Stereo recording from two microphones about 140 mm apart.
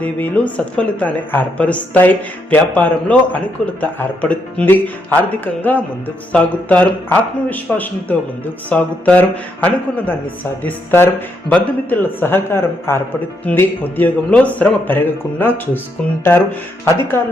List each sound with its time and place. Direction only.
0.0 s a woman's voice: 10° left (ahead or behind)
6.3 s a woman's voice: 10° left (ahead or behind)